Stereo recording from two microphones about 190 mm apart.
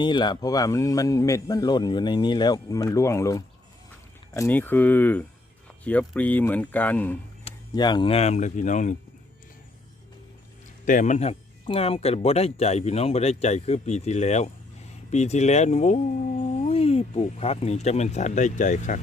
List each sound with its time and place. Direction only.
0.0 s speech: 25° left (ahead or behind); by 7.2 s 10° left (ahead or behind)
7.7 s speech: 25° left (ahead or behind); by 9.0 s 40° left (ahead or behind)
10.8 s speech: 40° left (ahead or behind)